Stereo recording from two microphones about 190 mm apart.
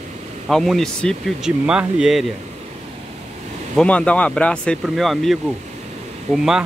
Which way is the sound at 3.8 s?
5° left (ahead or behind).